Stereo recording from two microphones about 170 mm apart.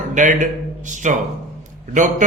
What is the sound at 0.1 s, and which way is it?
A man's voice, 45° right (ahead or behind).